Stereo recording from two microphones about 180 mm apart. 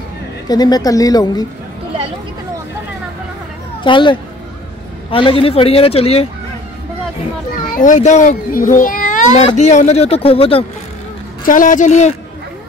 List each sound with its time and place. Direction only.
0.5 s a woman's voice: 20° left (ahead or behind)
3.8 s a woman's voice: 25° left (ahead or behind)
7.5 s a child's voice: 45° left (ahead or behind)
11.4 s speech: 45° left (ahead or behind)